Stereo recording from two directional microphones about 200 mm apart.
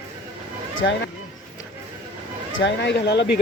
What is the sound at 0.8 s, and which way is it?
Speech, 60° left (ahead or behind).